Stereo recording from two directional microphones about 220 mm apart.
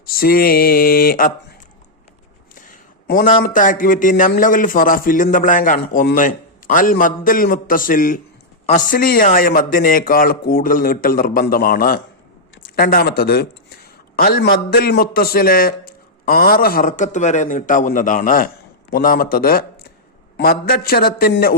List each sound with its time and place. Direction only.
0.0 s a man's voice: 40° left (ahead or behind)
3.1 s a man's voice: 40° left (ahead or behind)